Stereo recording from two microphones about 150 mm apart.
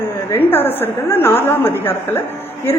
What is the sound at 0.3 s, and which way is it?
A woman's voice, 15° left (ahead or behind).